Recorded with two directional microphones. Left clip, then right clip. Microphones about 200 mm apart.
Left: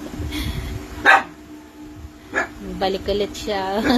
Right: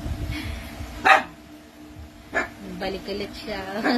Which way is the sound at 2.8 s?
20° left (ahead or behind).